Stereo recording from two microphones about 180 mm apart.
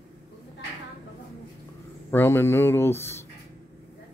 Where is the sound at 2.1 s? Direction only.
15° left (ahead or behind).